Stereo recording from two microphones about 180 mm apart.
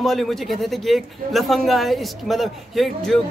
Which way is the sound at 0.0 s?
Centre (ahead or behind).